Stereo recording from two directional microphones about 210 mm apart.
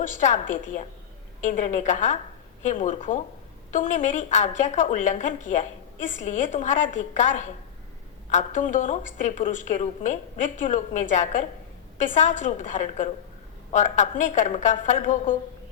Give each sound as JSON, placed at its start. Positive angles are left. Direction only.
{"t": 0.0, "sound": "a woman's voice", "side_deg": 35}